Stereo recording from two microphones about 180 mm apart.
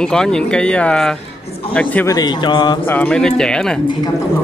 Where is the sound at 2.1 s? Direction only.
20° left (ahead or behind).